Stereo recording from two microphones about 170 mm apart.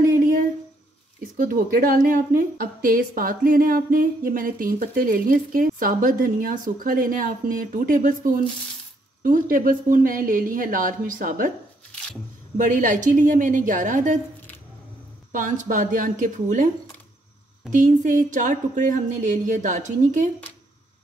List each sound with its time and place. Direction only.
0.2 s a sound: 55° right (ahead or behind)
1.3 s a woman's voice: 55° right (ahead or behind)
12.5 s speech: 50° right (ahead or behind)
15.3 s speech: 50° right (ahead or behind)
17.7 s speech: 50° right (ahead or behind)